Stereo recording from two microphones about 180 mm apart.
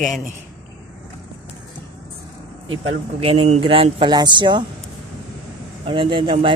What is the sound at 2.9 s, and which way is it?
Speech, 30° right (ahead or behind).